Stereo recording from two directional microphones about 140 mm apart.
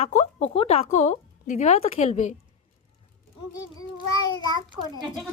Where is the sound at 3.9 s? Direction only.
35° left (ahead or behind).